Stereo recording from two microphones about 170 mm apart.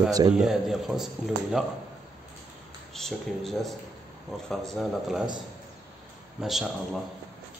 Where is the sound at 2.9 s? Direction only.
Centre (ahead or behind).